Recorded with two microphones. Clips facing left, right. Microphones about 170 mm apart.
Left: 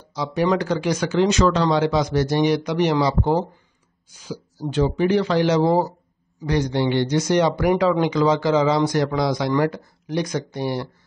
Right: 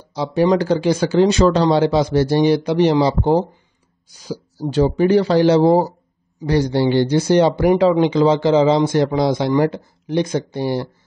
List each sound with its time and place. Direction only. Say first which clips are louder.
0.0 s speech: right 5 dB; 30° right (ahead or behind)